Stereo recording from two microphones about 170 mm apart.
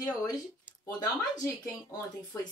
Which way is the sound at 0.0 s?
20° left (ahead or behind).